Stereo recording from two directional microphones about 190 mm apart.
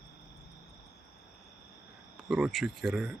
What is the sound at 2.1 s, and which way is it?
Speech, centre (ahead or behind).